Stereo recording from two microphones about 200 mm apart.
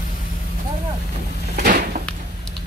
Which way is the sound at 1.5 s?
50° right (ahead or behind).